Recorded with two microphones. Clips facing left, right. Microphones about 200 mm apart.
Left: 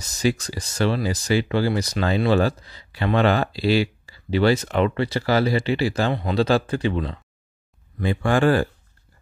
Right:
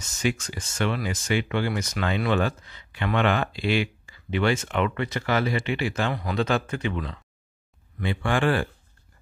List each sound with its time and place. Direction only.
0.0 s speech: 35° left (ahead or behind)